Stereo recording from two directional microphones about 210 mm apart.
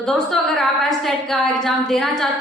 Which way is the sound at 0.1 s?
Centre (ahead or behind).